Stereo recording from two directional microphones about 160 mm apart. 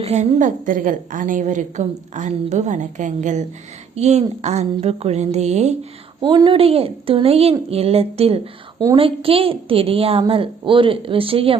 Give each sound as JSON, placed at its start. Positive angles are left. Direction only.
{"t": 0.0, "sound": "a woman's voice", "side_deg": -40}
{"t": 6.2, "sound": "a woman's voice", "side_deg": -25}